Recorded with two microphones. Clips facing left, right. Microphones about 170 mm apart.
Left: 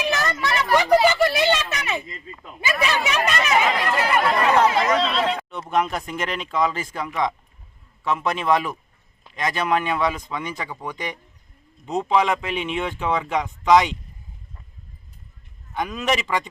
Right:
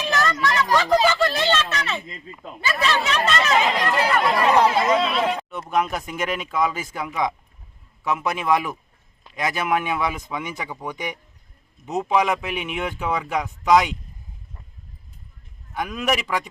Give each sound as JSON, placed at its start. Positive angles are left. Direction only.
{"t": 0.0, "sound": "a sound", "side_deg": 20}
{"t": 3.6, "sound": "chatter", "side_deg": -15}
{"t": 5.7, "sound": "speech", "side_deg": -5}
{"t": 15.7, "sound": "speech", "side_deg": 0}